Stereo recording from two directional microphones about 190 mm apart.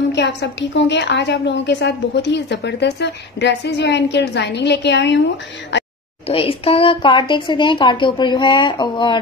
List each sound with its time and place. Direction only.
0.1 s a woman's voice: 65° left (ahead or behind)
6.2 s a woman's voice: 30° left (ahead or behind)